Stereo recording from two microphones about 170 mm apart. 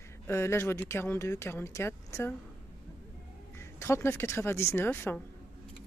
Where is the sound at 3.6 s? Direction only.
15° left (ahead or behind).